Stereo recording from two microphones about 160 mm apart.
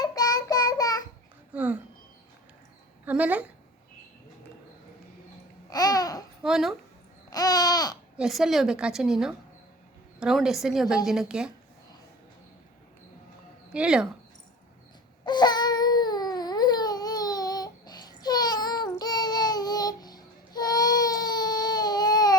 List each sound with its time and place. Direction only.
0.0 s child singing: 25° left (ahead or behind)
1.5 s a sound: 10° right (ahead or behind)
3.1 s a woman's voice: 10° right (ahead or behind)
5.7 s babbling: 25° left (ahead or behind)
6.4 s a woman's voice: centre (ahead or behind)
7.3 s babbling: 25° left (ahead or behind)
8.2 s a woman's voice: centre (ahead or behind)
13.7 s a woman's voice: 5° right (ahead or behind)
15.2 s baby cry: 25° left (ahead or behind)